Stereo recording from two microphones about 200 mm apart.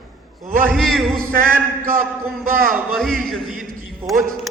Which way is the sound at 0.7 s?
Centre (ahead or behind).